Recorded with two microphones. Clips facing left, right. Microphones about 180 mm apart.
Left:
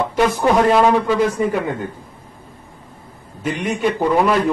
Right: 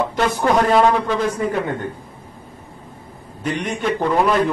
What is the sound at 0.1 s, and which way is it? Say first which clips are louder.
A man's voice: left 2 dB; 5° left (ahead or behind).